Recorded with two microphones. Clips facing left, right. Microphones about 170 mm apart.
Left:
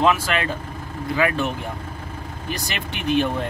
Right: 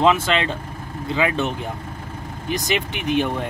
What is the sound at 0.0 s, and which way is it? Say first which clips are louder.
Speech: right 2 dB; 20° right (ahead or behind).